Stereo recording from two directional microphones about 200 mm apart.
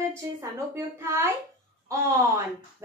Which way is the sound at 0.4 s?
15° right (ahead or behind).